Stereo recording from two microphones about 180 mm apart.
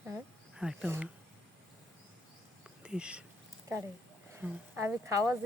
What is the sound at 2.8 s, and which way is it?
Speech, 5° right (ahead or behind).